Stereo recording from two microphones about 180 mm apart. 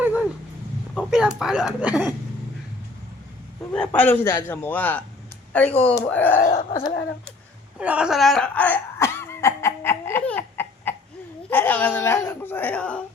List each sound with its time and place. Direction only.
0.0 s dog: 10° right (ahead or behind)
0.9 s speech: 5° right (ahead or behind)
3.7 s a man's voice: 10° left (ahead or behind)
6.4 s a sound: 40° left (ahead or behind)
7.8 s laughter: 5° right (ahead or behind); by 10.9 s 10° left (ahead or behind)
11.5 s a sound: 10° left (ahead or behind)